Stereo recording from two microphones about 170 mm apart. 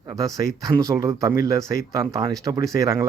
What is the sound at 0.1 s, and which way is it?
Speech, 20° right (ahead or behind).